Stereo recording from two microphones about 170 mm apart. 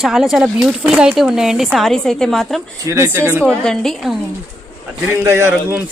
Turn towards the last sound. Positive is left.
turn(degrees=-15)  # may be behind; listen again after turning